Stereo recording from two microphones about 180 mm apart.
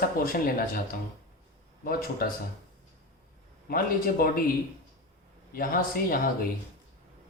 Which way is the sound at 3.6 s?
55° left (ahead or behind).